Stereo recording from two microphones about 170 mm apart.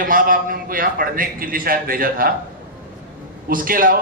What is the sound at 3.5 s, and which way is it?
Speech, 55° right (ahead or behind).